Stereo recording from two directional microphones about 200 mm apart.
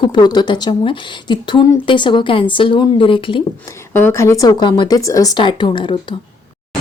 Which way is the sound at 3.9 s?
10° left (ahead or behind).